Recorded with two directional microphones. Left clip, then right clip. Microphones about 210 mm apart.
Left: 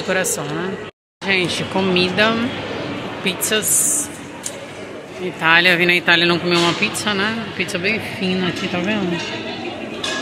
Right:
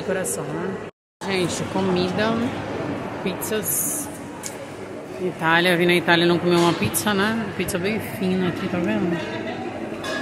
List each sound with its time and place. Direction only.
1.2 s speech: 5° left (ahead or behind)
5.4 s speech: 15° right (ahead or behind)
8.2 s speech: centre (ahead or behind)